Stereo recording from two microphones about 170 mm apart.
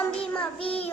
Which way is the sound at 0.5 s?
35° left (ahead or behind).